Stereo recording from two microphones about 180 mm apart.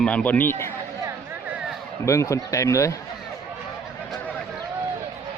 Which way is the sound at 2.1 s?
15° left (ahead or behind).